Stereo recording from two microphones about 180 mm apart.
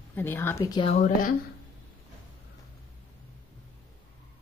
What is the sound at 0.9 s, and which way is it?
Speech, 45° left (ahead or behind).